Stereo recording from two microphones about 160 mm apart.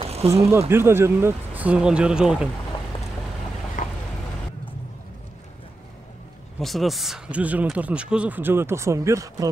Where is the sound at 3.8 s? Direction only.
55° left (ahead or behind).